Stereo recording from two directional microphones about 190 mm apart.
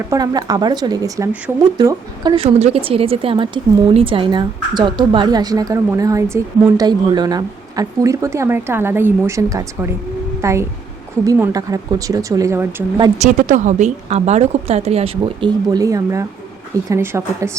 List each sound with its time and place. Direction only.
0.1 s a woman's voice: 20° right (ahead or behind)
13.1 s speech: 40° right (ahead or behind); by 17.5 s 15° right (ahead or behind)